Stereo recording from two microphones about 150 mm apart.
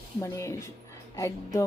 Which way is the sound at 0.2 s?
20° left (ahead or behind).